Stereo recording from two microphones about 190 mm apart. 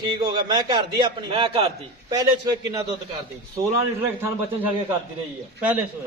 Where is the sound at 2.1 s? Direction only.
20° right (ahead or behind).